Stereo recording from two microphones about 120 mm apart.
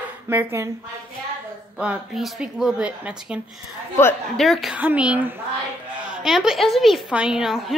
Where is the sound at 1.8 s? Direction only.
5° right (ahead or behind).